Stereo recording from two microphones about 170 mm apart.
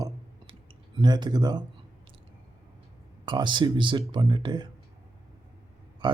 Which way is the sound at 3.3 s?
25° right (ahead or behind).